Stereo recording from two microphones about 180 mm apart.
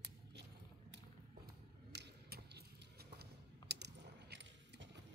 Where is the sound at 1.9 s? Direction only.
70° right (ahead or behind); by 5.0 s 85° right.